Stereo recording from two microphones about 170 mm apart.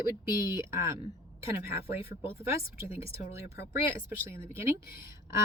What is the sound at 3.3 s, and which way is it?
Speech, 15° right (ahead or behind).